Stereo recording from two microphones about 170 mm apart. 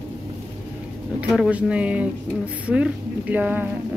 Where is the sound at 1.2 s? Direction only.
5° right (ahead or behind).